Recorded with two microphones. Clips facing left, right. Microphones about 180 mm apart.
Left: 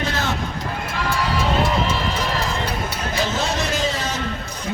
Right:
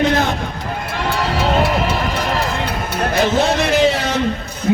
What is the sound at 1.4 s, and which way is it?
Run, 65° right (ahead or behind).